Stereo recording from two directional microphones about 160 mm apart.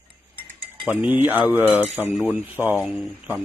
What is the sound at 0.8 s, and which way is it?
Speech, 10° right (ahead or behind).